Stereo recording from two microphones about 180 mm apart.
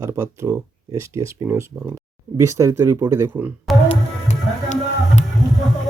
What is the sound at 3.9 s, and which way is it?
Music, 40° left (ahead or behind).